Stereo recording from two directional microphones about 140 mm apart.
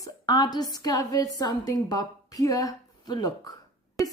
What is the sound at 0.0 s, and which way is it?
A woman's voice, 25° left (ahead or behind).